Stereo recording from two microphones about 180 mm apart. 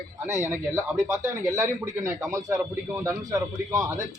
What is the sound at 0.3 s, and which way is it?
A man's voice, 15° right (ahead or behind).